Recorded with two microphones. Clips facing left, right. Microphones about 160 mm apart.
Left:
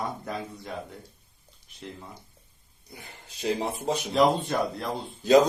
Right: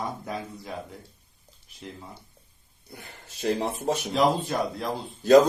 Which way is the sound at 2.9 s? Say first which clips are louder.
Right 1 dB; 15° left (ahead or behind).